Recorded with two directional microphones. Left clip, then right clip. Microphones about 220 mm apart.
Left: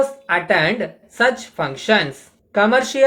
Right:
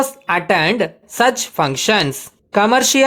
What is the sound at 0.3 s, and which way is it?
Speech, 50° right (ahead or behind).